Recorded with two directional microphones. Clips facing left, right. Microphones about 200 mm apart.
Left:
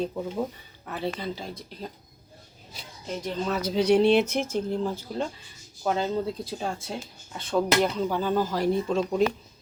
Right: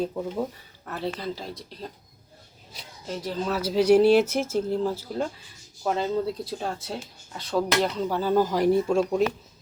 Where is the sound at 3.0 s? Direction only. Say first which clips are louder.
Right 1 dB; 5° right (ahead or behind).